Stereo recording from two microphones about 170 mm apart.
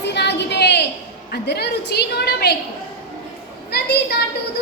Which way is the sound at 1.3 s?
75° left (ahead or behind).